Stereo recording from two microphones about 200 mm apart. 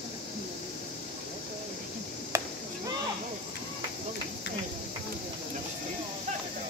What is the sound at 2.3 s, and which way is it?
Chop, 15° right (ahead or behind).